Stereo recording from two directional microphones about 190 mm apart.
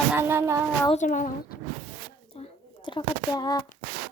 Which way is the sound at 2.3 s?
30° left (ahead or behind).